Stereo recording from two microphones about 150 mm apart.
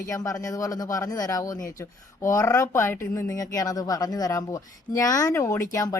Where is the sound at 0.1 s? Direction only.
20° left (ahead or behind).